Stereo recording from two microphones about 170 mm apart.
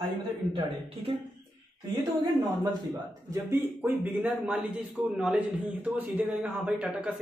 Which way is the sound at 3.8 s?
10° right (ahead or behind).